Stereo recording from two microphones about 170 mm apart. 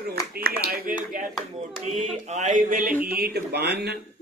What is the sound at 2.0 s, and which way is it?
A man's voice, 45° right (ahead or behind).